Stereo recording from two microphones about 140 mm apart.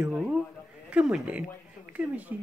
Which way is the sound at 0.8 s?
5° right (ahead or behind).